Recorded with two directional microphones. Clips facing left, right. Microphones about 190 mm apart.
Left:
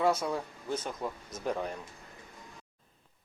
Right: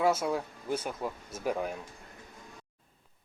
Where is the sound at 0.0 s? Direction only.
5° right (ahead or behind).